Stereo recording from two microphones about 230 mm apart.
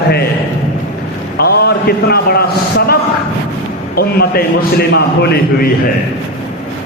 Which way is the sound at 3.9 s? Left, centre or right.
Left.